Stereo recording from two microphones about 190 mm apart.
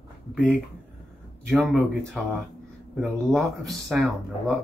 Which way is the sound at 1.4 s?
5° right (ahead or behind).